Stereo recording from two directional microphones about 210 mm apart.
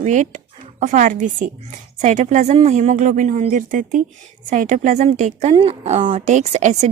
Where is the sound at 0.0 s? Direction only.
35° right (ahead or behind).